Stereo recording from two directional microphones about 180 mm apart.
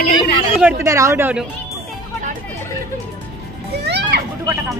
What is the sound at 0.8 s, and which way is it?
Speech, 15° right (ahead or behind).